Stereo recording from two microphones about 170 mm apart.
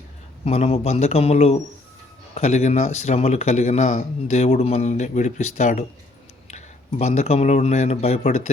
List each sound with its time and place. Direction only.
0.4 s speech: 40° left (ahead or behind)